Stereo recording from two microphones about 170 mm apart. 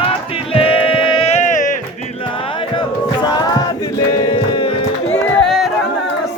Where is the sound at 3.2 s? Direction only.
25° left (ahead or behind).